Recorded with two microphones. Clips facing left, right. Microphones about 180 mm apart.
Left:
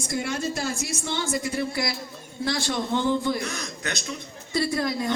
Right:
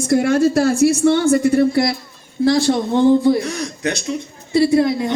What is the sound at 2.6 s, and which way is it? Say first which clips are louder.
A woman's voice: right 11 dB; 40° right (ahead or behind).